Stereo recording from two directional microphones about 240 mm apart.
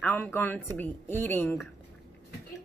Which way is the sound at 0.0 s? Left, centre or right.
Centre.